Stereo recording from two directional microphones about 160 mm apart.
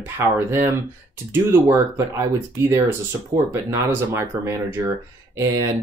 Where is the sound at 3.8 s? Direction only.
15° right (ahead or behind).